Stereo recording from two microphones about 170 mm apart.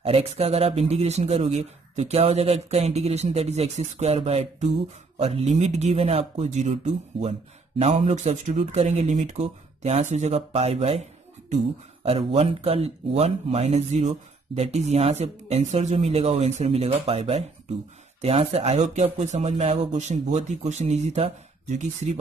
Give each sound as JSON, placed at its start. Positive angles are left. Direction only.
{"t": 0.0, "sound": "speech", "side_deg": -35}